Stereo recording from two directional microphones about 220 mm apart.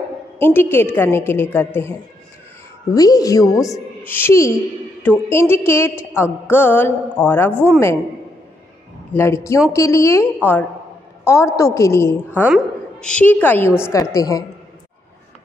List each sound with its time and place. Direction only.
0.4 s a woman's voice: 10° left (ahead or behind)
9.1 s a woman's voice: 10° left (ahead or behind)